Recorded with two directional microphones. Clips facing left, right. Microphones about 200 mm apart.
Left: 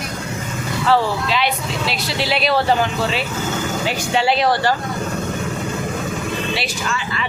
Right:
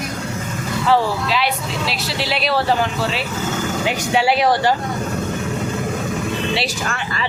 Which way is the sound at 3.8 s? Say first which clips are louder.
Right 2 dB; 15° right (ahead or behind).